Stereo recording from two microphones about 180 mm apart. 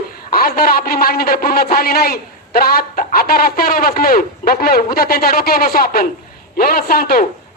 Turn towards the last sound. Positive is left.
turn(degrees=55)  # may be behind; listen again after turning